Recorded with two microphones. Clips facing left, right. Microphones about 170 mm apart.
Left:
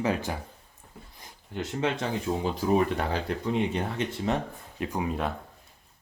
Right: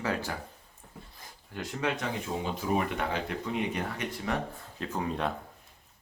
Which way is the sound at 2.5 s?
35° left (ahead or behind).